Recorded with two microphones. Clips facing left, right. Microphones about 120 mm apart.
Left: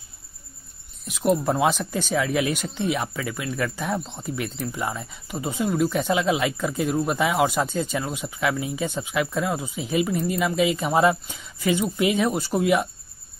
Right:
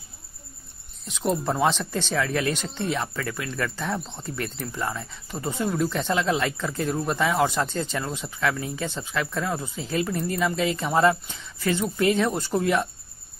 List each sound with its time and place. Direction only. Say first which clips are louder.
1.0 s speech: left 4 dB; 5° left (ahead or behind)